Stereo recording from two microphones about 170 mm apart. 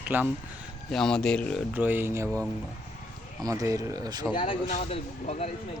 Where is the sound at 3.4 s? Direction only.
20° right (ahead or behind).